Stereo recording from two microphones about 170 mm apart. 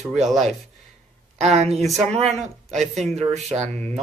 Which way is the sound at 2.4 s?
40° right (ahead or behind).